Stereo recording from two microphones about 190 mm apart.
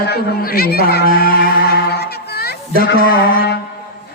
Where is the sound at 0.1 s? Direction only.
55° left (ahead or behind).